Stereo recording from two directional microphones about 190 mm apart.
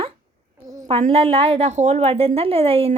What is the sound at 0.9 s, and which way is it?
A woman's voice, 35° right (ahead or behind).